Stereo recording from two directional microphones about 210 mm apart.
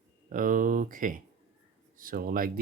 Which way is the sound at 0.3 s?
40° right (ahead or behind).